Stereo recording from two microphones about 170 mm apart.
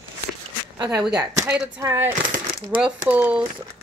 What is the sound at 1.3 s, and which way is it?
A woman's voice, 10° right (ahead or behind).